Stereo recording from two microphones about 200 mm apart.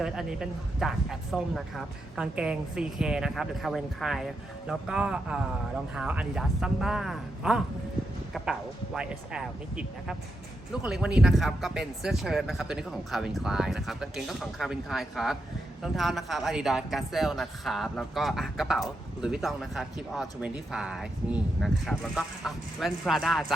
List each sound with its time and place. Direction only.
0.0 s speech: 5° right (ahead or behind)